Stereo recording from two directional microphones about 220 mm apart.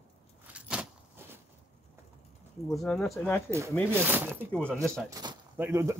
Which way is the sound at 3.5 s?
10° right (ahead or behind).